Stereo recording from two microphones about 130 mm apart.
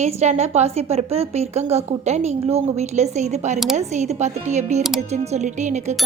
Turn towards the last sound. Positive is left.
turn(degrees=-70)  # may be behind; listen again after turning